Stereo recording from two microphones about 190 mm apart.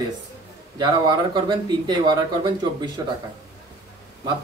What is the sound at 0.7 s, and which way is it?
Speech, 25° right (ahead or behind).